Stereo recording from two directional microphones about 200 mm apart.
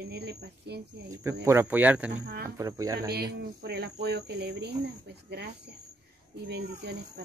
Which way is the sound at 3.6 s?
55° right (ahead or behind).